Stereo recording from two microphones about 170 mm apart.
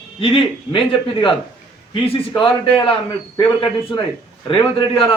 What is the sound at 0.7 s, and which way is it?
Speech, 30° left (ahead or behind).